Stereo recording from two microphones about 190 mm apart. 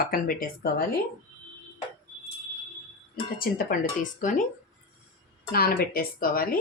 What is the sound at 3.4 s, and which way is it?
Speech, 50° left (ahead or behind).